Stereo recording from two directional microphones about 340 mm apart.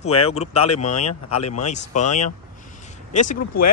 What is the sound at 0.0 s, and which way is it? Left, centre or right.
Speech, centre.